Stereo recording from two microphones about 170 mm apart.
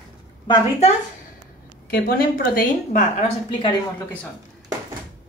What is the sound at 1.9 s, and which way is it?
A woman's voice, 60° left (ahead or behind).